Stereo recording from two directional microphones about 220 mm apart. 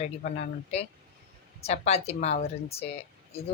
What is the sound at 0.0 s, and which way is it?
A woman's voice, 35° left (ahead or behind).